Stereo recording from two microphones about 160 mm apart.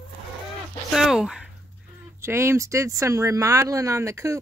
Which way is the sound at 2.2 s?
15° right (ahead or behind).